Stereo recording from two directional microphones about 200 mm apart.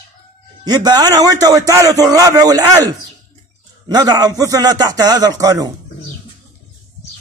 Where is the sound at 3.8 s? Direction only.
20° right (ahead or behind).